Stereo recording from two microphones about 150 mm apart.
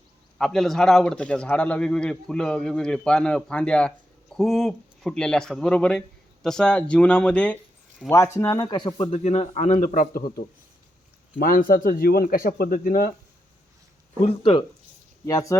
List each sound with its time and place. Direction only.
0.3 s a man's voice: centre (ahead or behind)
8.4 s speech: 20° left (ahead or behind)
9.0 s a man's voice: 50° left (ahead or behind); by 13.1 s 80° left
14.3 s speech: 35° left (ahead or behind)
15.3 s speech: 20° left (ahead or behind)